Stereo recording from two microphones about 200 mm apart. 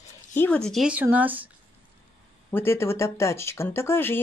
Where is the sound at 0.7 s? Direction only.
5° right (ahead or behind).